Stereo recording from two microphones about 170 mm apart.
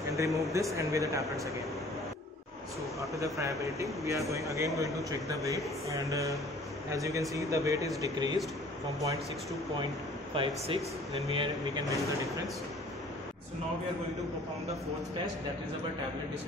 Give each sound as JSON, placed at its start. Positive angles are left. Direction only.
{"t": 0.2, "sound": "speech", "side_deg": -20}
{"t": 3.3, "sound": "speech", "side_deg": -20}
{"t": 10.3, "sound": "speech", "side_deg": -30}